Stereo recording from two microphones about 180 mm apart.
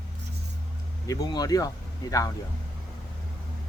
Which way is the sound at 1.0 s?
20° left (ahead or behind).